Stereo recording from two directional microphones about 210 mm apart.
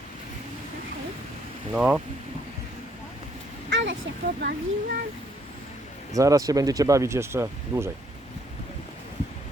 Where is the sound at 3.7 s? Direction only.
60° right (ahead or behind).